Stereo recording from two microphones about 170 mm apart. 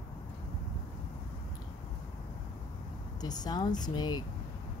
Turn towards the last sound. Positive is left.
turn(degrees=25)  # may be behind; listen again after turning